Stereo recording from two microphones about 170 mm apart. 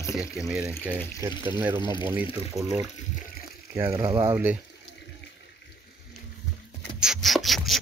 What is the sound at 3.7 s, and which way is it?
Speech, 20° right (ahead or behind).